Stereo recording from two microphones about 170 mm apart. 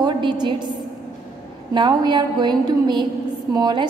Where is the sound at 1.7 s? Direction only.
25° right (ahead or behind).